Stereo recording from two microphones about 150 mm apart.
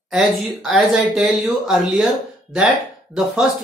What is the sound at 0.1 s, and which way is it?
A woman's voice, centre (ahead or behind).